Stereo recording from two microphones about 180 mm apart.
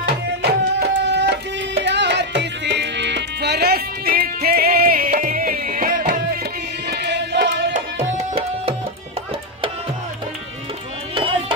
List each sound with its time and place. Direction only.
0.0 s music: 65° right (ahead or behind)
6.9 s music: 70° right (ahead or behind)
7.7 s tabla: 40° right (ahead or behind)